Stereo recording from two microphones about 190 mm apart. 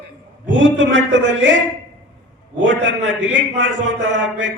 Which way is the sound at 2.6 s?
80° right.